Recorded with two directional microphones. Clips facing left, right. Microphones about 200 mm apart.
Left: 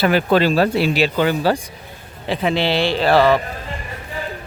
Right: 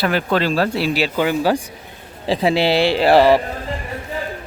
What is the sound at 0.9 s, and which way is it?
Speech, 10° right (ahead or behind).